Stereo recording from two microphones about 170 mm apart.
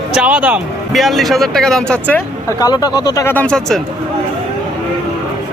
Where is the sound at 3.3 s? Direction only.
5° left (ahead or behind).